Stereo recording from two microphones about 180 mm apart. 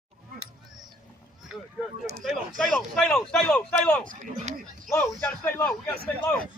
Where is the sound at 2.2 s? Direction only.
Centre (ahead or behind).